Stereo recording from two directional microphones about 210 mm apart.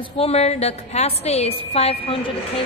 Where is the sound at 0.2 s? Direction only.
30° left (ahead or behind).